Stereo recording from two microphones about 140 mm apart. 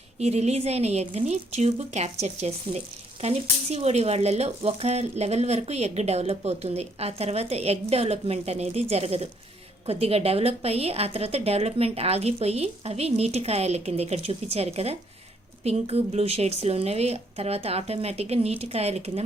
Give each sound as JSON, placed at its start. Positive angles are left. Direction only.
{"t": 0.2, "sound": "speech", "side_deg": -50}